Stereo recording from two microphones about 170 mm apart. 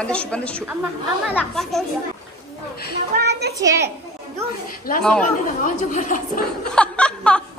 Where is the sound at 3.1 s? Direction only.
75° right (ahead or behind).